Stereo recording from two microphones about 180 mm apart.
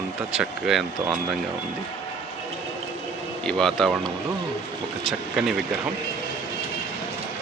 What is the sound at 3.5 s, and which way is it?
Speech, 5° left (ahead or behind).